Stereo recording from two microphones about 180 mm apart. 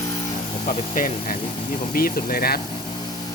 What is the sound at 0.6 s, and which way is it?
Speech, 50° left (ahead or behind).